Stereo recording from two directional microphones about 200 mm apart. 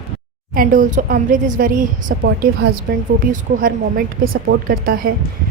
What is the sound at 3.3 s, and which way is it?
Speech, 45° right (ahead or behind).